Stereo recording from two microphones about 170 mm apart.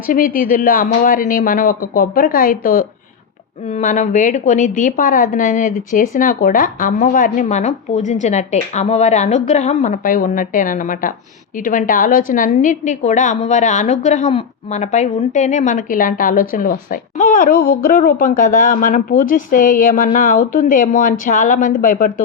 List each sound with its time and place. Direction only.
0.1 s a woman's voice: 55° left (ahead or behind)